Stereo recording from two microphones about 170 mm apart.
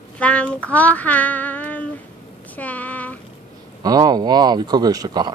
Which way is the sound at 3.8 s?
20° right (ahead or behind).